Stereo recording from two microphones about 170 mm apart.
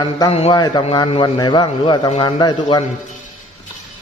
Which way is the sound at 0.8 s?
35° left (ahead or behind).